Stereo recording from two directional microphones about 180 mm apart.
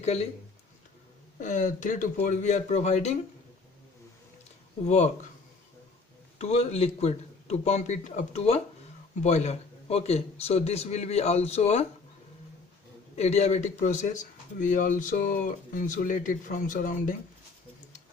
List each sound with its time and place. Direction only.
0.0 s speech: 35° left (ahead or behind)
1.4 s a man's voice: 45° left (ahead or behind)
4.8 s a man's voice: 40° left (ahead or behind)
6.3 s a man's voice: 35° left (ahead or behind)
13.1 s a man's voice: 35° left (ahead or behind)